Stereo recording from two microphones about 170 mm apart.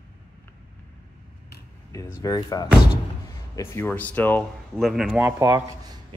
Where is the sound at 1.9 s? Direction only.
20° left (ahead or behind); by 5.1 s centre (ahead or behind).